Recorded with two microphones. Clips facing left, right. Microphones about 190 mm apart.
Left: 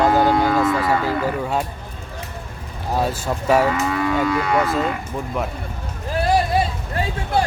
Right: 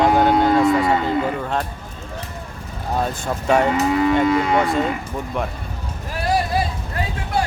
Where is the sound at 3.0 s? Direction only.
5° left (ahead or behind).